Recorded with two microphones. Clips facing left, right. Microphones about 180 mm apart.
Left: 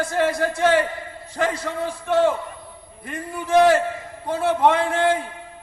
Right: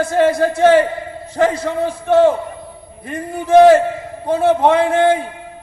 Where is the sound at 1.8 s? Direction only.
25° right (ahead or behind).